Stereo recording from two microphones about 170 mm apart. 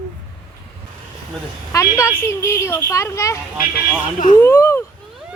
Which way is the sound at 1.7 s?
15° left (ahead or behind).